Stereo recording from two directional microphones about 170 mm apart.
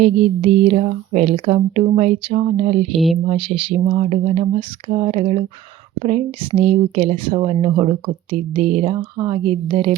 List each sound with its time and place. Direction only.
0.0 s speech: 40° right (ahead or behind)